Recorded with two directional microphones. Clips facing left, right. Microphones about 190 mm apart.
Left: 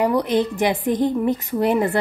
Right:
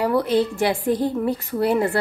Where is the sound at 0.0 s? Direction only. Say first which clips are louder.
Left 1 dB; 20° left (ahead or behind).